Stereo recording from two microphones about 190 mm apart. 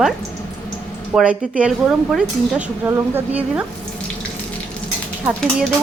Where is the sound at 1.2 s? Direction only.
5° right (ahead or behind).